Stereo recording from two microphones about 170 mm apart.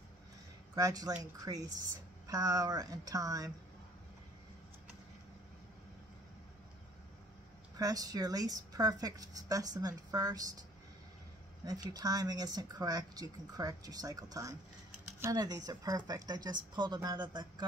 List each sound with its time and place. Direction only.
0.7 s speech: 20° right (ahead or behind)
7.7 s speech: 20° right (ahead or behind)
11.6 s speech: 20° right (ahead or behind)